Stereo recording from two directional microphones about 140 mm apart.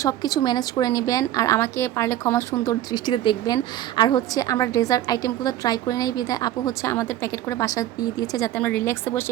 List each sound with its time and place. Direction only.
0.0 s a woman's voice: 25° left (ahead or behind)
6.9 s speech: 15° left (ahead or behind)
7.6 s a woman's voice: 25° left (ahead or behind)
8.5 s speech: 15° left (ahead or behind)